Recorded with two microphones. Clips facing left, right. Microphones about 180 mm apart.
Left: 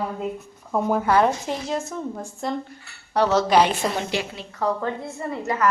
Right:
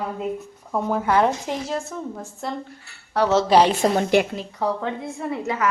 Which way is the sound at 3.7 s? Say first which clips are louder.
Right 6 dB; 50° right (ahead or behind).